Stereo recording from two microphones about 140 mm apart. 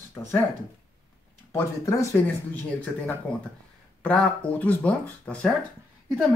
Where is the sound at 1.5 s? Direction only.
20° left (ahead or behind).